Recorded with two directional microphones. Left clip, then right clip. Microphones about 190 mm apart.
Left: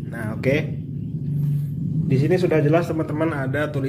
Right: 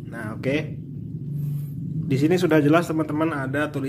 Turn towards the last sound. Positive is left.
turn(degrees=-15)  # may be behind; listen again after turning